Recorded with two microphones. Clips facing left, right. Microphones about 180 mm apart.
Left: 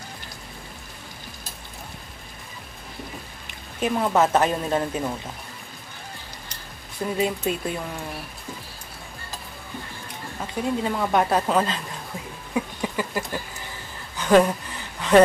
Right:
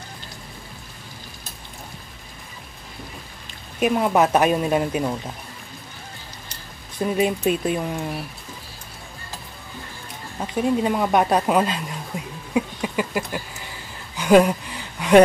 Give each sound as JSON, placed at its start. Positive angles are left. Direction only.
{"t": 3.8, "sound": "a woman's voice", "side_deg": -15}
{"t": 7.2, "sound": "speech", "side_deg": -20}
{"t": 10.4, "sound": "a woman's voice", "side_deg": -20}
{"t": 12.1, "sound": "a sound", "side_deg": -15}
{"t": 15.0, "sound": "speech", "side_deg": -15}